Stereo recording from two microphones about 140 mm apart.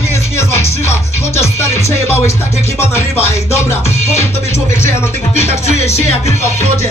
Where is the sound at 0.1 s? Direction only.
20° left (ahead or behind).